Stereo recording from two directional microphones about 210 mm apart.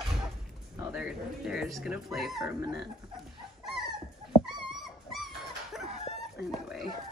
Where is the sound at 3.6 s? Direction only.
Centre (ahead or behind).